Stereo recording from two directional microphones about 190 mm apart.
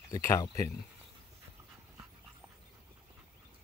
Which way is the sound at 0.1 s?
20° left (ahead or behind).